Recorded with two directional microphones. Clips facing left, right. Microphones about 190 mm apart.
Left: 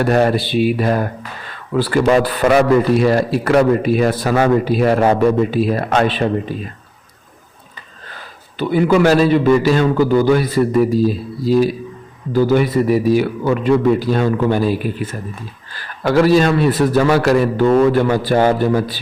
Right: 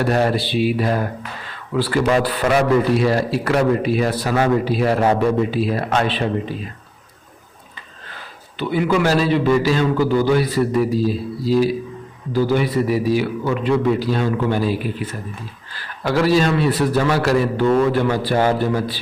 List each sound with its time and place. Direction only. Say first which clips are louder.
0.1 s a man's voice: left 4 dB; 55° left (ahead or behind)
8.5 s a man's voice: left 5 dB; 45° left (ahead or behind)